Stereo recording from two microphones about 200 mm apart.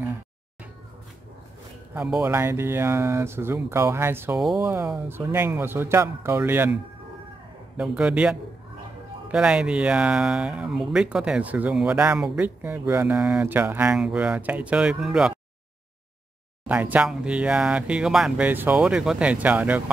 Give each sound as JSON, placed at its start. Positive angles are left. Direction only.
{"t": 2.0, "sound": "speech", "side_deg": -5}
{"t": 16.6, "sound": "speech", "side_deg": -10}